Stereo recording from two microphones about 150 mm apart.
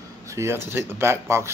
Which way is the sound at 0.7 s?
15° right (ahead or behind).